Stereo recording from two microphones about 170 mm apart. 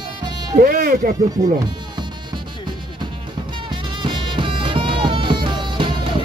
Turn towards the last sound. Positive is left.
turn(degrees=-25)  # may be behind; listen again after turning